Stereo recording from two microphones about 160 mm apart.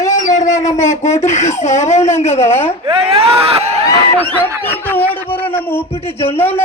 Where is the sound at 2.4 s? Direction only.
15° left (ahead or behind).